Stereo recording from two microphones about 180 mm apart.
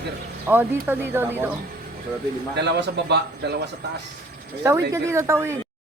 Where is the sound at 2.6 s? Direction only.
70° right (ahead or behind).